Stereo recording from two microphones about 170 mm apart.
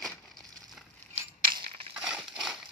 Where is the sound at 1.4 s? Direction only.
30° right (ahead or behind).